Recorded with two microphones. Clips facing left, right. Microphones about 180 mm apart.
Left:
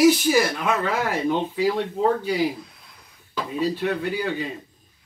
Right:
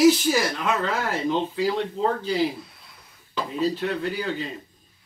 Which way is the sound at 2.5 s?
5° right (ahead or behind).